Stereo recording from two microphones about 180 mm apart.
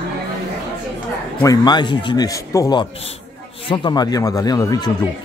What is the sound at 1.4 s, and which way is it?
Speech, 20° left (ahead or behind).